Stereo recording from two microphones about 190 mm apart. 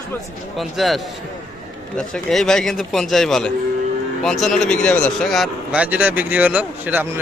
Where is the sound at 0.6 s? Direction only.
Centre (ahead or behind).